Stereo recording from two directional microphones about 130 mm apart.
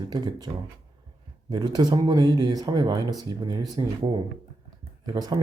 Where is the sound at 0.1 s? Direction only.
30° right (ahead or behind).